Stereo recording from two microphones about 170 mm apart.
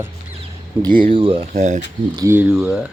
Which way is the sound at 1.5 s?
45° right (ahead or behind).